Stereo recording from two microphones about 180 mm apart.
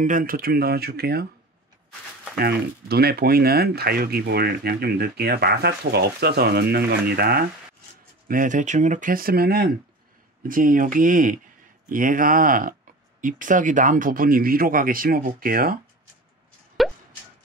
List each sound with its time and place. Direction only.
0.0 s speech: 50° right (ahead or behind)
2.3 s speech: 60° right (ahead or behind)
8.3 s speech: 45° right (ahead or behind)
16.8 s plop: centre (ahead or behind)